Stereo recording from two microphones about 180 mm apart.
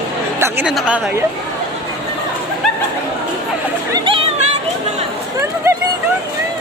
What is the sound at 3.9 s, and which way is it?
Chatter, 30° right (ahead or behind).